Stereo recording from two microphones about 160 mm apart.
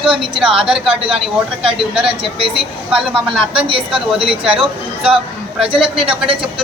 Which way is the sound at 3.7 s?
35° right (ahead or behind).